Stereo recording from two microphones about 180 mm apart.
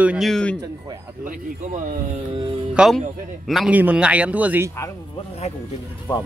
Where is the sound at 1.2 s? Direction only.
45° right (ahead or behind).